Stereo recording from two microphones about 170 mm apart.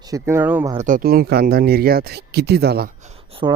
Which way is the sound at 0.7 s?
50° right (ahead or behind).